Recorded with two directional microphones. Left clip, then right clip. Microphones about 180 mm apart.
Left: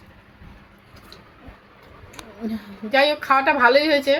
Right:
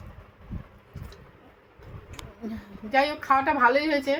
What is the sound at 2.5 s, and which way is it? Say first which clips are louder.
A woman's voice: left 4 dB; 15° left (ahead or behind).